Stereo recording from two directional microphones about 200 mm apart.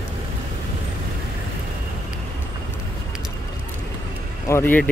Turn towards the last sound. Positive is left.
turn(degrees=10)  # may be behind; listen again after turning